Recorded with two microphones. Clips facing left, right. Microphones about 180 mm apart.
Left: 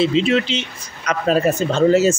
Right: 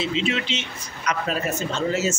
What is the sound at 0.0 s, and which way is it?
Speech, 35° left (ahead or behind).